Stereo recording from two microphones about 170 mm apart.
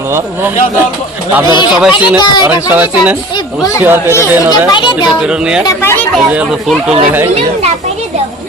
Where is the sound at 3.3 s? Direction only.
20° left (ahead or behind).